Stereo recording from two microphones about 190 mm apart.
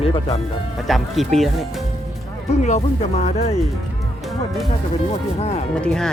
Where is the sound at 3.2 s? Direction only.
35° left (ahead or behind).